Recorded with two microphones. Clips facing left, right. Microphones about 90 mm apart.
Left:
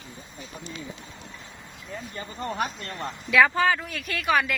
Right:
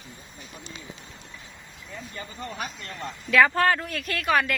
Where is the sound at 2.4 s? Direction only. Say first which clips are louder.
Left 7 dB; 45° left (ahead or behind).